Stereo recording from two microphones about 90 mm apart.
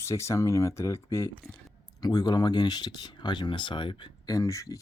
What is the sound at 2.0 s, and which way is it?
Speech, 50° left (ahead or behind).